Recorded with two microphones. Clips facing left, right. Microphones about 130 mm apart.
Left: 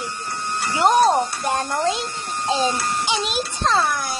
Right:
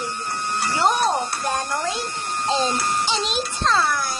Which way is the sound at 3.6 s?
20° left (ahead or behind).